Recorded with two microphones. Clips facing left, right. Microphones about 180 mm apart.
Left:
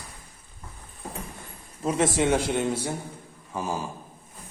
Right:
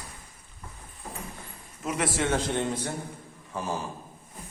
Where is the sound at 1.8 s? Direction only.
30° left (ahead or behind).